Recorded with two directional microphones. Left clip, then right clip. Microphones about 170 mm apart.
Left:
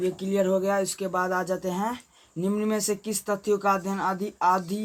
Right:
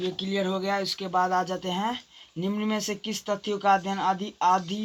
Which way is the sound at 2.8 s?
30° right (ahead or behind).